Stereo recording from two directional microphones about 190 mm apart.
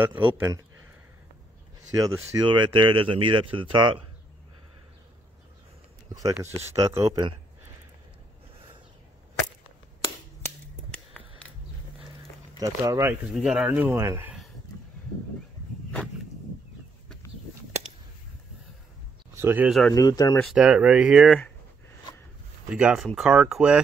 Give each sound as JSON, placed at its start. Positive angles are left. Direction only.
{"t": 0.4, "sound": "speech", "side_deg": -15}
{"t": 2.0, "sound": "speech", "side_deg": -20}
{"t": 6.3, "sound": "speech", "side_deg": -10}
{"t": 10.0, "sound": "a sound", "side_deg": 10}
{"t": 12.5, "sound": "speech", "side_deg": -20}
{"t": 13.3, "sound": "speech", "side_deg": -5}
{"t": 19.3, "sound": "speech", "side_deg": -10}
{"t": 19.9, "sound": "speech", "side_deg": 20}
{"t": 20.3, "sound": "speech", "side_deg": -5}
{"t": 22.7, "sound": "speech", "side_deg": -5}